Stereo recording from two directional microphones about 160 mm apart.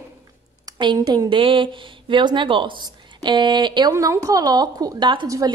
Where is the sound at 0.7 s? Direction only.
25° right (ahead or behind).